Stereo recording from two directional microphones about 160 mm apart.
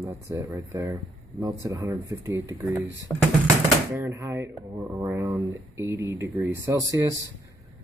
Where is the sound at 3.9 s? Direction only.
15° right (ahead or behind).